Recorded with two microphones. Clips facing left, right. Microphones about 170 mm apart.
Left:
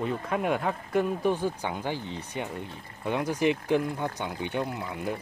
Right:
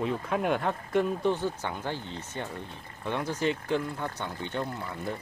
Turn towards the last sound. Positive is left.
turn(degrees=15)  # may be behind; listen again after turning